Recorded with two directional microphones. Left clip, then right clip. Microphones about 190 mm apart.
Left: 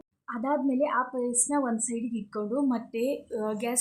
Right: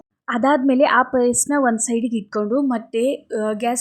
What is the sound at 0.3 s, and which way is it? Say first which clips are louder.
A woman's voice: right 11 dB; 35° right (ahead or behind).